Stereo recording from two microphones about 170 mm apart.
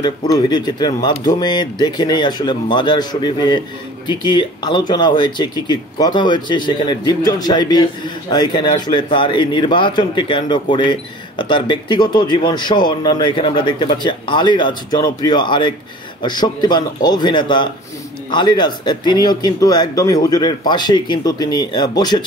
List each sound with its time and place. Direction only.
0.0 s speech: 25° left (ahead or behind)